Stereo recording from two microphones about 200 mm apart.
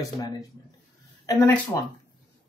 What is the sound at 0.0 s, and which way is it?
Speech, 20° left (ahead or behind).